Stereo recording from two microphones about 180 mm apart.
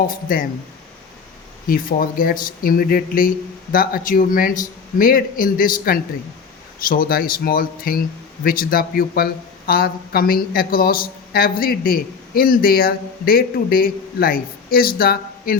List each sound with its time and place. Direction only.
0.3 s speech: 50° left (ahead or behind)
1.6 s speech: 55° left (ahead or behind)